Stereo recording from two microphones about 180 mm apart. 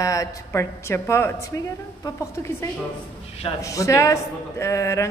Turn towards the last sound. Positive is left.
turn(degrees=15)  # may be behind; listen again after turning